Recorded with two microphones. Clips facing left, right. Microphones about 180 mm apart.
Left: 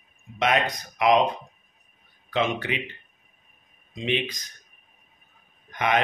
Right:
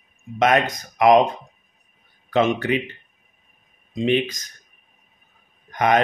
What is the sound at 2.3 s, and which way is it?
Speech, 45° right (ahead or behind).